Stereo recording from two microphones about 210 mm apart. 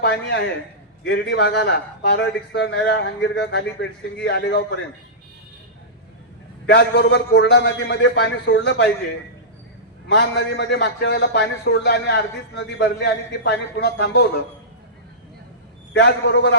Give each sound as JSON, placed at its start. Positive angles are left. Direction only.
{"t": 0.0, "sound": "a man's voice", "side_deg": 50}
{"t": 6.7, "sound": "a man's voice", "side_deg": 55}
{"t": 10.1, "sound": "a man's voice", "side_deg": 55}
{"t": 15.9, "sound": "a man's voice", "side_deg": 55}